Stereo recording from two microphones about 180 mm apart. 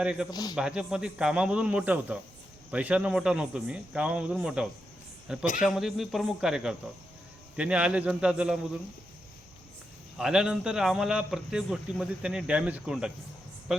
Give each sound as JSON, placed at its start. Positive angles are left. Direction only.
{"t": 0.0, "sound": "a man's voice", "side_deg": -5}
{"t": 0.3, "sound": "a man's voice", "side_deg": 20}
{"t": 0.5, "sound": "a man's voice", "side_deg": -5}
{"t": 10.2, "sound": "a man's voice", "side_deg": -5}